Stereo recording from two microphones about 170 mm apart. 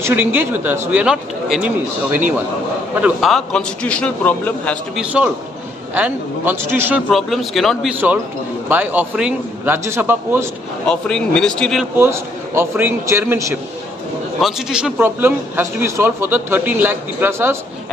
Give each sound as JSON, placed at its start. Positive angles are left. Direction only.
{"t": 0.0, "sound": "a man's voice", "side_deg": -10}
{"t": 4.9, "sound": "a man's voice", "side_deg": -5}
{"t": 7.1, "sound": "a man's voice", "side_deg": 0}
{"t": 8.6, "sound": "a man's voice", "side_deg": -10}
{"t": 10.9, "sound": "a man's voice", "side_deg": 5}
{"t": 12.0, "sound": "a man's voice", "side_deg": -15}
{"t": 14.4, "sound": "a man's voice", "side_deg": -5}